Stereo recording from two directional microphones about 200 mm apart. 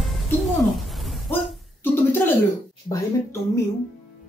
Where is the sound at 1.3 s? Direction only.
10° left (ahead or behind).